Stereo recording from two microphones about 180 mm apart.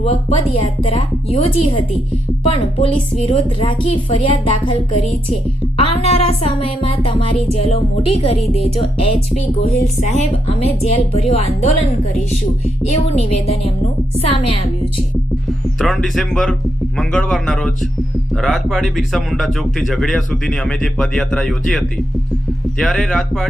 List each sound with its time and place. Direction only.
0.0 s a woman's voice: 35° left (ahead or behind)
12.9 s a woman's voice: 35° left (ahead or behind)
15.8 s speech: centre (ahead or behind)